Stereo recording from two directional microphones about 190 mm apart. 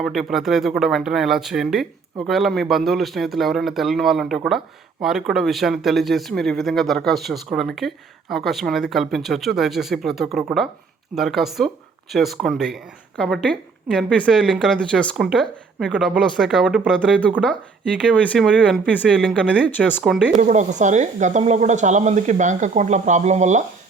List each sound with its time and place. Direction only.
0.0 s speech: centre (ahead or behind)
20.4 s speech: 40° right (ahead or behind)